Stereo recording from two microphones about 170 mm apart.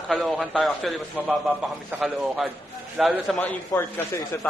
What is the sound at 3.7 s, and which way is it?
Speech, 10° left (ahead or behind).